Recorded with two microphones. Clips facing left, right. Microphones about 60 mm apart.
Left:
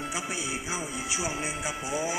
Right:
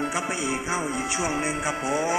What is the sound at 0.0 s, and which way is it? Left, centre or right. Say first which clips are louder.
Speech: right 6 dB; right.